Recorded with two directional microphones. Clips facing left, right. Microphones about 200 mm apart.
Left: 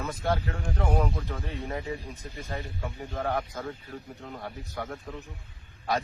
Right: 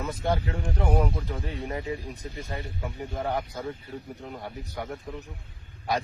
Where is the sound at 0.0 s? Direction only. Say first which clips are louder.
Right 1 dB; 10° right (ahead or behind).